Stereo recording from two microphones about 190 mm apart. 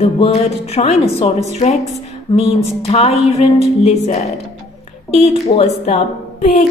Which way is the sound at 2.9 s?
35° left (ahead or behind).